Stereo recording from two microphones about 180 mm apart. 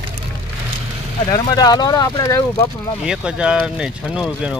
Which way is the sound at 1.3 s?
20° left (ahead or behind).